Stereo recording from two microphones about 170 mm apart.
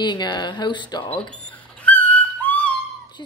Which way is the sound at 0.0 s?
25° left (ahead or behind).